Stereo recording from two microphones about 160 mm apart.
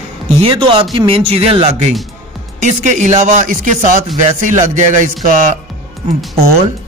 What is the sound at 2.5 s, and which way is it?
A man's voice, 50° right (ahead or behind).